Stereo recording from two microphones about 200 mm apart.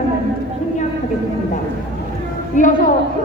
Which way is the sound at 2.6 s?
40° left (ahead or behind).